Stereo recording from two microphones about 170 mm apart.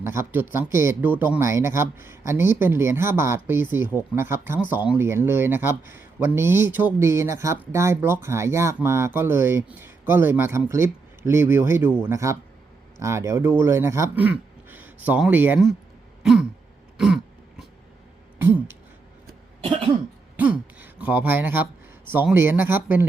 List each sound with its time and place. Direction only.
0.0 s speech: 15° right (ahead or behind)
16.2 s throat clearing: 5° right (ahead or behind)
18.3 s a sound: 10° right (ahead or behind)
19.6 s cough: 30° right (ahead or behind)
20.3 s speech: 10° right (ahead or behind)